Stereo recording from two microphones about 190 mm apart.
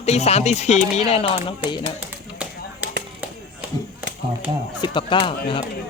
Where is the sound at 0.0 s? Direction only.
35° left (ahead or behind).